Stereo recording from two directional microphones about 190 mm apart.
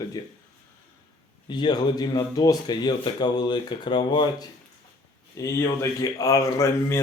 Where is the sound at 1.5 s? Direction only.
25° left (ahead or behind).